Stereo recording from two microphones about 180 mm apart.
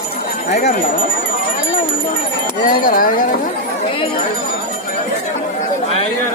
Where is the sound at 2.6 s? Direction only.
50° left (ahead or behind).